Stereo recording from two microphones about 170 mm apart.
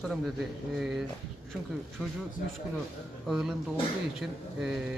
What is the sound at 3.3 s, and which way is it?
Speech, centre (ahead or behind).